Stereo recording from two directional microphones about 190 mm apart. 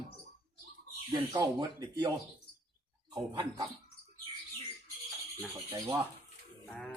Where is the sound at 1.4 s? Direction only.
20° right (ahead or behind).